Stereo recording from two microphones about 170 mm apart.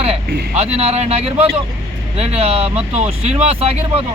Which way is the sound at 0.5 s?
40° right (ahead or behind).